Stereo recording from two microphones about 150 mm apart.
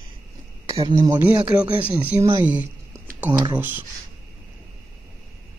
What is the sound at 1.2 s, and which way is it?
Speech, 10° right (ahead or behind).